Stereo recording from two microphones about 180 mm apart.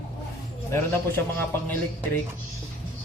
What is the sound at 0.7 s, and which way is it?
A man's voice, 10° left (ahead or behind).